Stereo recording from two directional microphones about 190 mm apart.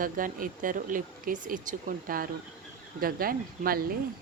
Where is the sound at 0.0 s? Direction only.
45° right (ahead or behind).